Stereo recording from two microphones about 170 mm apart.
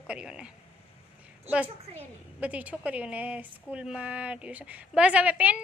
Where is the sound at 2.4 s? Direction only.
10° right (ahead or behind).